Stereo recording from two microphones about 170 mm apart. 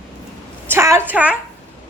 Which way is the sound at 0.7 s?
15° right (ahead or behind).